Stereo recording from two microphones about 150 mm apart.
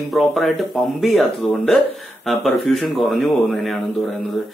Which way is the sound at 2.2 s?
Centre (ahead or behind).